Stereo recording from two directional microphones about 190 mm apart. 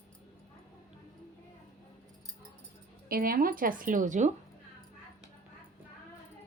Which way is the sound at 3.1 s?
50° right (ahead or behind).